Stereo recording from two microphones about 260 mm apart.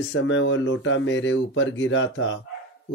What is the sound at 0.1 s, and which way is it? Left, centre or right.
Speech, left.